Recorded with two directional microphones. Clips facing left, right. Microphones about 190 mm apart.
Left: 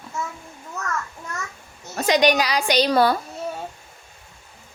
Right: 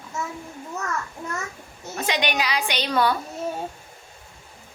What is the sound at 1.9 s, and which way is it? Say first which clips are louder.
A woman's voice: left 7 dB; 40° left (ahead or behind).